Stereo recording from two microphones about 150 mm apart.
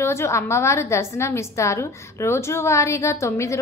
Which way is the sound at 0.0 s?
15° left (ahead or behind).